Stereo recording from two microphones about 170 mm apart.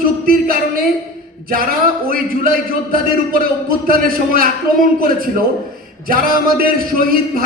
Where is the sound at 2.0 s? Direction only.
55° right (ahead or behind).